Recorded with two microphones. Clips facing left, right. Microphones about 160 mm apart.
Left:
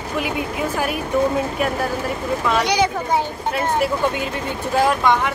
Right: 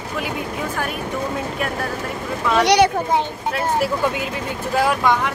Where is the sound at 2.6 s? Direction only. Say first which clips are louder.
Right 8 dB; 70° right (ahead or behind).